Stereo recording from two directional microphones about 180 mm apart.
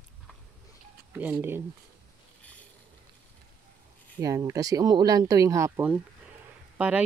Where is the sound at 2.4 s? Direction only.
10° left (ahead or behind).